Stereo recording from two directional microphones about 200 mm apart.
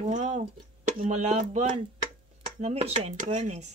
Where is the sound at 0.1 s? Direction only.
35° right (ahead or behind).